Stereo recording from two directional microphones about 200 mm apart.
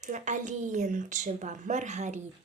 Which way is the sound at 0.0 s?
35° right (ahead or behind).